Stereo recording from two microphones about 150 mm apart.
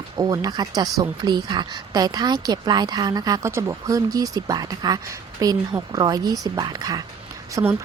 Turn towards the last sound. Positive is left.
turn(degrees=-25)  # may be behind; listen again after turning